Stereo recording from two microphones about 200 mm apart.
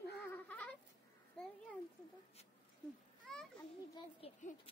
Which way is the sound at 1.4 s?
5° left (ahead or behind).